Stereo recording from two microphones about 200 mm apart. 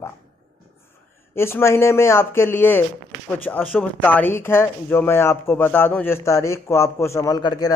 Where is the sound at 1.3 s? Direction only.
10° left (ahead or behind).